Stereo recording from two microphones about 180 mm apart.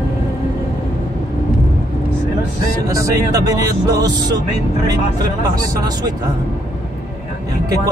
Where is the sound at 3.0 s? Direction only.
20° right (ahead or behind).